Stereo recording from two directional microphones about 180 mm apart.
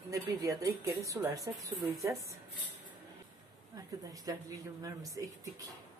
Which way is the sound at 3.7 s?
20° right (ahead or behind).